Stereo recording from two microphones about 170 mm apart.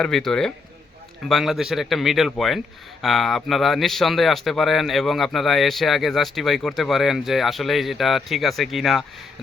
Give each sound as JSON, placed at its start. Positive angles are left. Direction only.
{"t": 0.0, "sound": "speech", "side_deg": 0}